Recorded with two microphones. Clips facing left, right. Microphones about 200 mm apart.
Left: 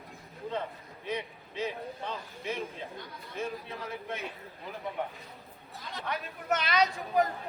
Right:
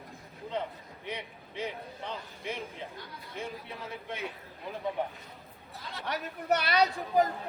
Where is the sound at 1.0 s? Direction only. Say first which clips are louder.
Left 4 dB; 15° right (ahead or behind).